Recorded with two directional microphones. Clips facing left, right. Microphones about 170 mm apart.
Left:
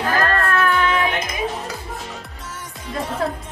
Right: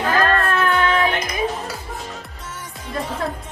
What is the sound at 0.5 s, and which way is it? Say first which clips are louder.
Music: even; 25° right (ahead or behind).